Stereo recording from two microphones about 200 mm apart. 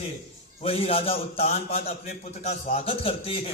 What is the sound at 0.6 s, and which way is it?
A man's voice, 30° left (ahead or behind).